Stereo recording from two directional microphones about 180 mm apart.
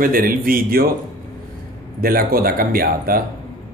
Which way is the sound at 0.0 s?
50° right (ahead or behind).